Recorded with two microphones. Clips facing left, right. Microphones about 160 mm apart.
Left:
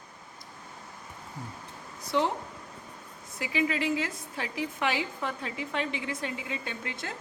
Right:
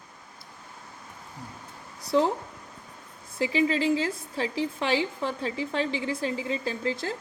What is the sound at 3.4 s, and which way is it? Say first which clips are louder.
A woman's voice: right 5 dB; 30° right (ahead or behind).